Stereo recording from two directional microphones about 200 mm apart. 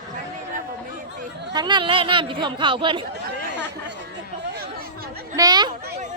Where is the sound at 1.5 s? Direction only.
20° right (ahead or behind).